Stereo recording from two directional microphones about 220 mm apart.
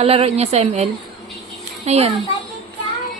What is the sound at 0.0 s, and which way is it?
Speech, 30° right (ahead or behind).